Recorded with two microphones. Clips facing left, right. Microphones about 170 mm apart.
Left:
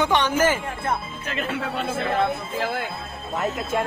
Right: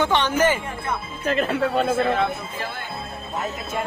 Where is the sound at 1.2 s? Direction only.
40° right (ahead or behind).